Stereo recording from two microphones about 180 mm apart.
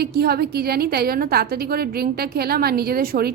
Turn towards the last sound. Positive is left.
turn(degrees=-60)  # may be behind; listen again after turning